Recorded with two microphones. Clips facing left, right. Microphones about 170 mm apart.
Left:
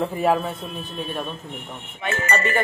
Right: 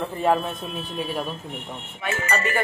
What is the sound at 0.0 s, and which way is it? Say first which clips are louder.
Speech: left 1 dB; 5° left (ahead or behind).